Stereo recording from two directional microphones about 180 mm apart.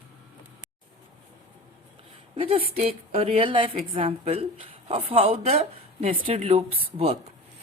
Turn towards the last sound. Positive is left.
turn(degrees=-30)  # may be behind; listen again after turning